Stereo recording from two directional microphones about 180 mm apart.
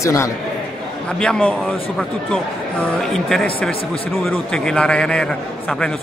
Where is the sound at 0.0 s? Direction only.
15° left (ahead or behind).